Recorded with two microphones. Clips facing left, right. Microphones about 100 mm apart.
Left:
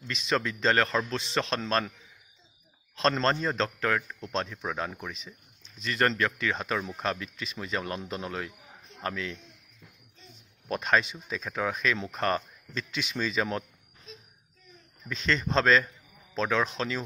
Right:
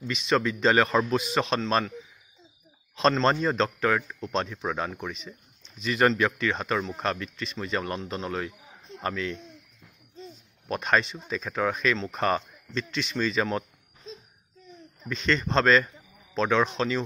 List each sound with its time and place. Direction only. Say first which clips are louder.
0.0 s speech: right 4 dB; centre (ahead or behind)
3.0 s speech: right 3 dB; centre (ahead or behind)
10.7 s speech: right 1 dB; centre (ahead or behind)
14.1 s a sound: right 7 dB; 30° right (ahead or behind)
15.0 s speech: right 3 dB; centre (ahead or behind)